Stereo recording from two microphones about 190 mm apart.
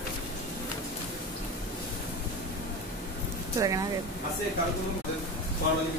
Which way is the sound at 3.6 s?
15° right (ahead or behind).